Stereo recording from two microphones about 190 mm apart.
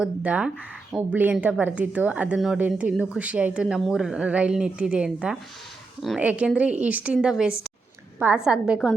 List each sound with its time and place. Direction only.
0.0 s speech: 5° right (ahead or behind)